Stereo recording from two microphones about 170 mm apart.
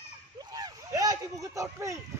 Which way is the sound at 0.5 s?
20° right (ahead or behind).